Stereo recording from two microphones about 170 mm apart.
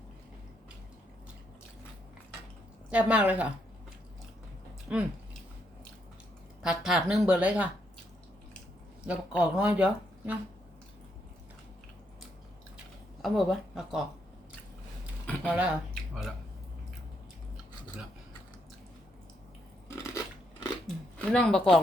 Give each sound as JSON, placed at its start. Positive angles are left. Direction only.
{"t": 2.9, "sound": "speech", "side_deg": -5}
{"t": 4.9, "sound": "speech", "side_deg": -10}
{"t": 6.6, "sound": "speech", "side_deg": -5}
{"t": 9.0, "sound": "speech", "side_deg": -5}
{"t": 13.2, "sound": "speech", "side_deg": 0}
{"t": 15.5, "sound": "speech", "side_deg": -5}
{"t": 20.0, "sound": "chewing", "side_deg": 20}
{"t": 20.8, "sound": "a sound", "side_deg": 5}